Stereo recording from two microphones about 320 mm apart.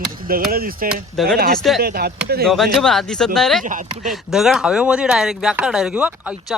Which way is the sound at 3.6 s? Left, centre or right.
Right.